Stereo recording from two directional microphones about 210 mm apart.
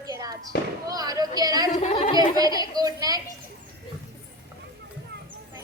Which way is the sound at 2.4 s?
20° right (ahead or behind).